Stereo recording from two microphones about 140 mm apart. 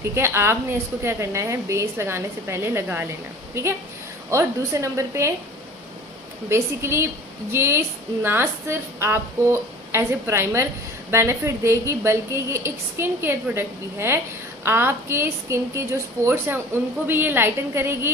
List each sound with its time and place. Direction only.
0.1 s a woman's voice: 20° right (ahead or behind)
4.3 s a woman's voice: 20° right (ahead or behind)
6.5 s a woman's voice: 20° right (ahead or behind)